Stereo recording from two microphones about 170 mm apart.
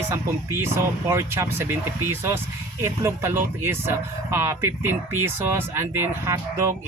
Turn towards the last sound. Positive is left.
turn(degrees=-15)  # may be behind; listen again after turning